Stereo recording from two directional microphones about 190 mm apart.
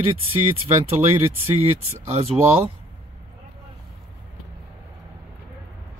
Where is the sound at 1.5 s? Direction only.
30° right (ahead or behind).